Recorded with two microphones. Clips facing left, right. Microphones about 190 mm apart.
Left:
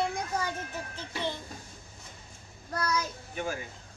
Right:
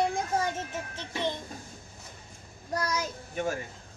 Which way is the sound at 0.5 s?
20° right (ahead or behind).